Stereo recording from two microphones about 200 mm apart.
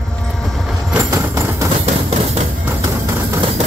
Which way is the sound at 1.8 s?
30° right (ahead or behind).